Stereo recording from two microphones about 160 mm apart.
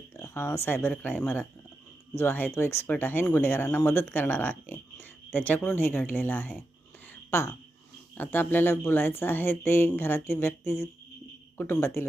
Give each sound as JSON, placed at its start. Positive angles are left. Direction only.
{"t": 0.2, "sound": "speech", "side_deg": 15}
{"t": 11.5, "sound": "speech", "side_deg": 15}